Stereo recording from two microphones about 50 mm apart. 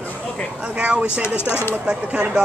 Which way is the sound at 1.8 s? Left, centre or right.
Right.